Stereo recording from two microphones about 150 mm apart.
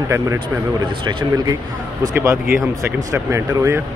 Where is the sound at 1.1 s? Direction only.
30° right (ahead or behind).